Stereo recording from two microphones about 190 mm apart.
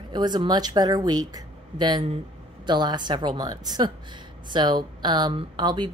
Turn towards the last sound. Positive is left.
turn(degrees=-25)  # may be behind; listen again after turning